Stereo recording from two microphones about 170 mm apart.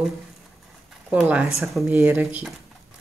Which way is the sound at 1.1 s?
5° right (ahead or behind).